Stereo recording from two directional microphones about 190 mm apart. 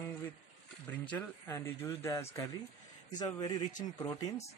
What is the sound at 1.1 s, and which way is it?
Speech, 15° left (ahead or behind).